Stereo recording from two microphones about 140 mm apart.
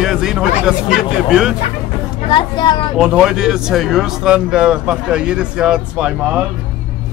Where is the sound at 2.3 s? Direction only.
35° left (ahead or behind).